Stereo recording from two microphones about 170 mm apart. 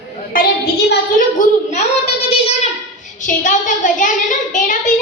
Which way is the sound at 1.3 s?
40° left (ahead or behind).